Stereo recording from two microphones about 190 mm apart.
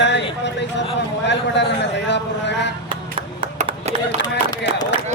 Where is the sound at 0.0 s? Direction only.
70° left (ahead or behind).